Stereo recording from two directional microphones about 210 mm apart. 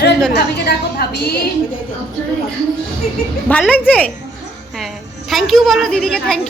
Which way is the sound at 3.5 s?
5° left (ahead or behind).